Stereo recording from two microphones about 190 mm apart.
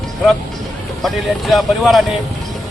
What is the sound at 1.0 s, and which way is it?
Speech, centre (ahead or behind).